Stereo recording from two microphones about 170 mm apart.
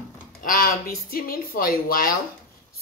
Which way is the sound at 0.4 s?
55° left (ahead or behind).